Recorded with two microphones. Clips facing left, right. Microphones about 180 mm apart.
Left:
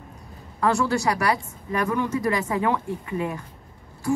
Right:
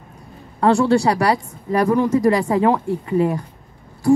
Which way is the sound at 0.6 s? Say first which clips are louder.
Right 7 dB; 30° right (ahead or behind).